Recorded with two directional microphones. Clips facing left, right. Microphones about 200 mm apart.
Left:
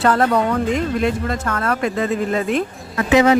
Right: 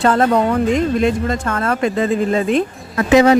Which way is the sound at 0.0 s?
25° right (ahead or behind).